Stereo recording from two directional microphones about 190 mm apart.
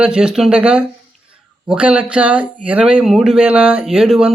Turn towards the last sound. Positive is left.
turn(degrees=-5)  # may be behind; listen again after turning